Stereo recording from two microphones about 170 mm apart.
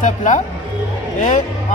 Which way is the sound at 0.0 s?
50° left (ahead or behind).